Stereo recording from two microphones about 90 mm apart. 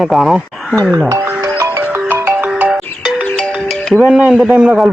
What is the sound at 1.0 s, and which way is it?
Music, 40° right (ahead or behind).